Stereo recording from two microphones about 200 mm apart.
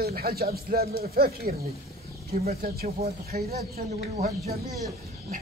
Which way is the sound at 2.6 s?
50° right (ahead or behind).